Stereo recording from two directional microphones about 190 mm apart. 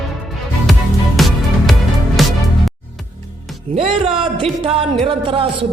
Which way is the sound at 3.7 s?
30° right (ahead or behind).